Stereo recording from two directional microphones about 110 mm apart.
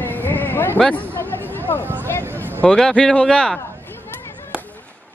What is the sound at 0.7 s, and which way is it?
Speech, 5° left (ahead or behind).